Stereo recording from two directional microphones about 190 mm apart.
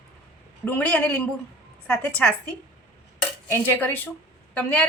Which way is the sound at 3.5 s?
10° left (ahead or behind).